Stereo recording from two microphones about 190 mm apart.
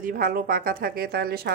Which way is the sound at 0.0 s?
50° right (ahead or behind).